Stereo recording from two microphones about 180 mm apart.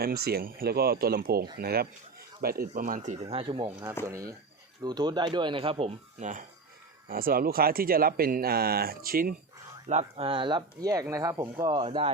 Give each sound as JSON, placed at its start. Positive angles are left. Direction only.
{"t": 0.0, "sound": "speech", "side_deg": -60}
{"t": 7.1, "sound": "speech", "side_deg": -55}
{"t": 9.9, "sound": "speech", "side_deg": -35}